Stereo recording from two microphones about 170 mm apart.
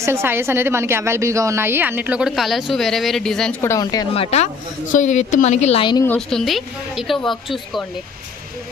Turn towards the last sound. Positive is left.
turn(degrees=0)  # may be behind; listen again after turning